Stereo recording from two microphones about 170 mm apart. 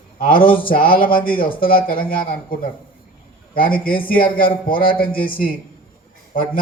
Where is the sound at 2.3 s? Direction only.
55° left (ahead or behind).